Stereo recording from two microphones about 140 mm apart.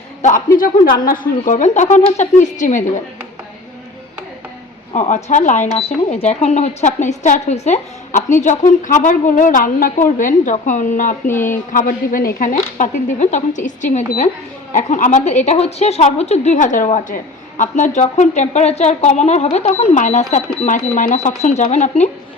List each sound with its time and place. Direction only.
0.2 s speech: 70° left (ahead or behind)
4.9 s speech: 60° left (ahead or behind); by 12.5 s 80° left
12.7 s speech: 60° left (ahead or behind)